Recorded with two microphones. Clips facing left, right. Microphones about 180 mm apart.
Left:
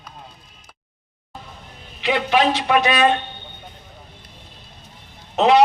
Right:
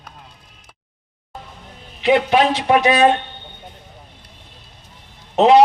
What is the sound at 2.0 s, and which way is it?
Speech, 40° right (ahead or behind).